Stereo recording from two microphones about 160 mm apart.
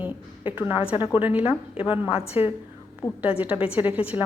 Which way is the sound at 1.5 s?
35° left (ahead or behind).